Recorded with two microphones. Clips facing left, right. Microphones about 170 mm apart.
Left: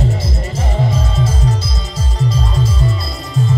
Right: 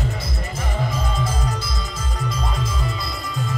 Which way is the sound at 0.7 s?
30° left (ahead or behind).